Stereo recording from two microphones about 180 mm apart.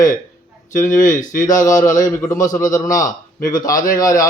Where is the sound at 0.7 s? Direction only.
45° left (ahead or behind).